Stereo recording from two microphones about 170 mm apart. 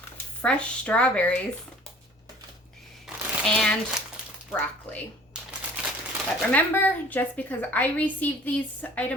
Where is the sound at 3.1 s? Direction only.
5° right (ahead or behind).